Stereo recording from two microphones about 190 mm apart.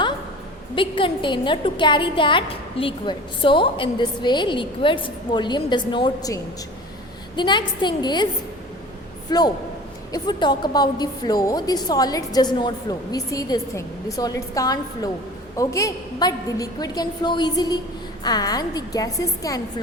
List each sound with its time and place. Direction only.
0.8 s a woman's voice: 25° left (ahead or behind)
9.3 s a woman's voice: 20° left (ahead or behind)